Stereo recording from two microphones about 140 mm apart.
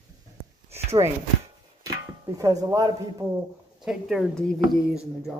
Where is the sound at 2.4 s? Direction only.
25° right (ahead or behind).